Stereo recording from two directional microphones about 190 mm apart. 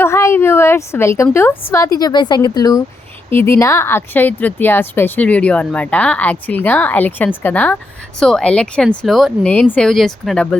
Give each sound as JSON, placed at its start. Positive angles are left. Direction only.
{"t": 0.0, "sound": "a woman's voice", "side_deg": 15}